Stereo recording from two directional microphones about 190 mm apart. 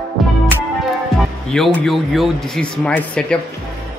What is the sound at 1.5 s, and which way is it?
A man's voice, centre (ahead or behind).